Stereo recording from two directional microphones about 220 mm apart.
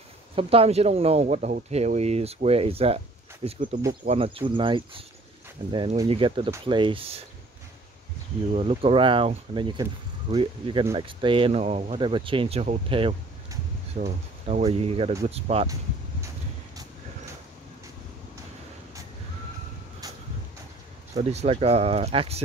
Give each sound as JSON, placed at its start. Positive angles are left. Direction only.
{"t": 0.4, "sound": "speech", "side_deg": -25}
{"t": 8.5, "sound": "speech", "side_deg": -25}
{"t": 13.9, "sound": "speech", "side_deg": -35}
{"t": 21.1, "sound": "speech", "side_deg": -30}